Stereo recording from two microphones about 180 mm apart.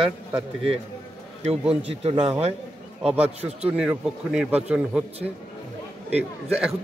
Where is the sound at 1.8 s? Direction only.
35° right (ahead or behind).